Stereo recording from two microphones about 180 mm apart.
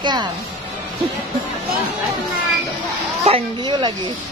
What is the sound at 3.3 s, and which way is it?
Speech, 25° right (ahead or behind).